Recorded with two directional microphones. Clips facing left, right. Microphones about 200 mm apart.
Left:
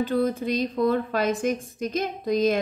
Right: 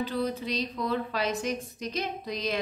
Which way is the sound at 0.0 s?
50° left (ahead or behind).